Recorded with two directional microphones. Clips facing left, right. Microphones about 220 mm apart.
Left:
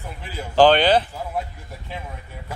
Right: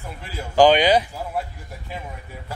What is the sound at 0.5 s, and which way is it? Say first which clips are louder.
Speech: even; 10° right (ahead or behind).